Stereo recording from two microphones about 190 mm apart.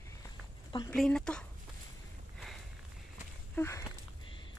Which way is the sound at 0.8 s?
5° left (ahead or behind).